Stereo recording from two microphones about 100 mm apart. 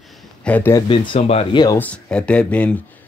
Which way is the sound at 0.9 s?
55° left (ahead or behind).